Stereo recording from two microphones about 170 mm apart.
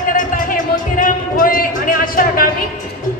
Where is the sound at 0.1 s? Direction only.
55° left (ahead or behind).